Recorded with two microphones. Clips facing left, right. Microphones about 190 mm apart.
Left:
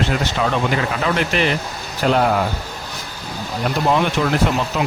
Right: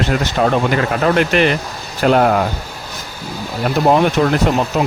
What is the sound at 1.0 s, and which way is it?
Speech, 60° right (ahead or behind).